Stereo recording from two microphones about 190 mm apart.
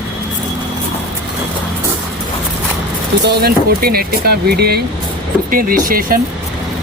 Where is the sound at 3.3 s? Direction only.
55° right (ahead or behind).